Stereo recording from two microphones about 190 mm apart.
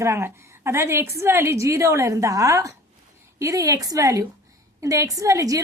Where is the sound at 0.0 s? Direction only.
15° right (ahead or behind).